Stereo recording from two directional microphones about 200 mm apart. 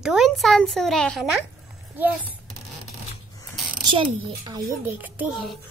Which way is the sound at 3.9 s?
25° right (ahead or behind).